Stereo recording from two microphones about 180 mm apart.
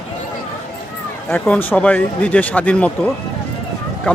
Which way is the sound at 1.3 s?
10° left (ahead or behind).